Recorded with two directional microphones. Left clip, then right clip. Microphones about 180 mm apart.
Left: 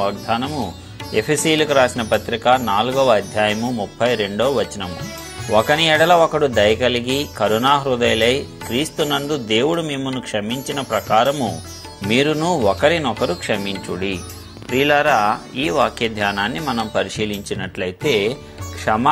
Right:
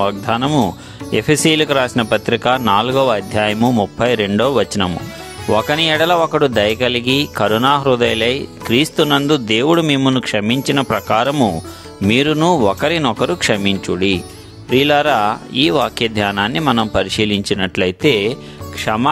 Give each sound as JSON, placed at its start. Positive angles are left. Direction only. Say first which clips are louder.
{"t": 0.0, "sound": "speech", "louder": "right 4 dB", "side_deg": -75}
{"t": 2.8, "sound": "speech", "louder": "right 1 dB", "side_deg": -40}
{"t": 13.5, "sound": "speech", "louder": "right 5 dB", "side_deg": -70}
{"t": 18.9, "sound": "speech", "louder": "even", "side_deg": -50}